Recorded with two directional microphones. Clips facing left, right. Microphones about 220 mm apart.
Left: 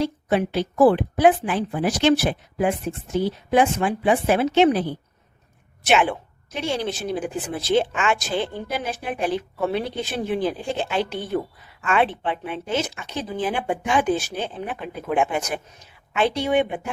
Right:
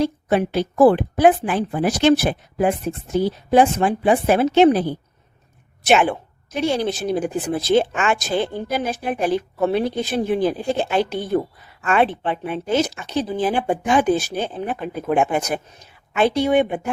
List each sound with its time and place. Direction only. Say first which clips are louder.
0.0 s a woman's voice: right 3 dB; 45° right (ahead or behind)